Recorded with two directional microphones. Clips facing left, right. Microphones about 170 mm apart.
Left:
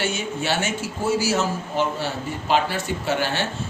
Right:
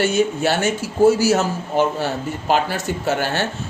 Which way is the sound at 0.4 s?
40° right (ahead or behind).